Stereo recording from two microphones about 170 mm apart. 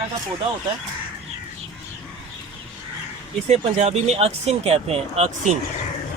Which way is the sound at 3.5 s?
40° right (ahead or behind).